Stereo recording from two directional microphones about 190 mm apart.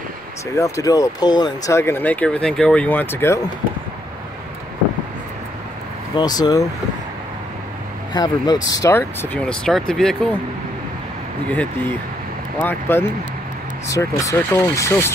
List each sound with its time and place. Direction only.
0.6 s speech: 15° left (ahead or behind)
6.1 s speech: 20° left (ahead or behind)
8.1 s speech: 20° left (ahead or behind); by 10.1 s 5° left (ahead or behind)
11.4 s speech: 5° left (ahead or behind)